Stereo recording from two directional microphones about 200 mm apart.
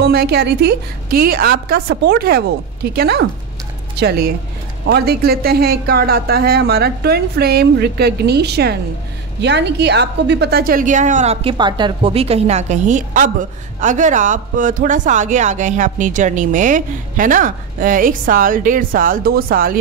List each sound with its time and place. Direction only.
0.0 s a woman's voice: 50° right (ahead or behind)